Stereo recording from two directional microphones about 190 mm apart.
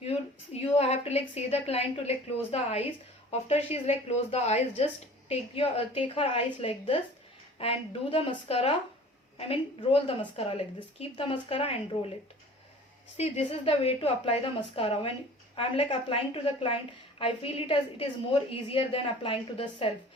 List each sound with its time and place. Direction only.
0.0 s a woman's voice: 35° left (ahead or behind)
13.1 s a woman's voice: 35° left (ahead or behind)